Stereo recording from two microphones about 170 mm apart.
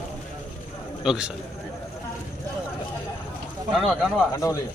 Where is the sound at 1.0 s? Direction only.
5° right (ahead or behind).